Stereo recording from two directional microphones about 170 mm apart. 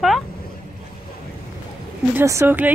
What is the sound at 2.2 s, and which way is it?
Speech, 15° right (ahead or behind).